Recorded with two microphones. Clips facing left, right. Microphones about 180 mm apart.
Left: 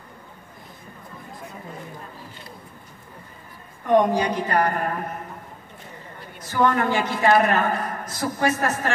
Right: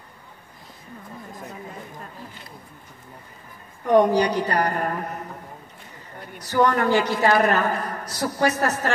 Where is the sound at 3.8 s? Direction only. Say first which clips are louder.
Right 2 dB; 40° right (ahead or behind).